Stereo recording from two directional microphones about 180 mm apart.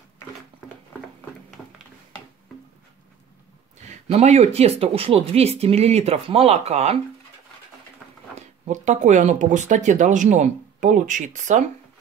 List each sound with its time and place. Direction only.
3.8 s speech: 40° right (ahead or behind)
8.4 s speech: 40° right (ahead or behind)